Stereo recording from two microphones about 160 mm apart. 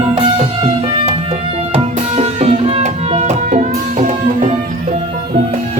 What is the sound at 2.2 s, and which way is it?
Music, 40° right (ahead or behind).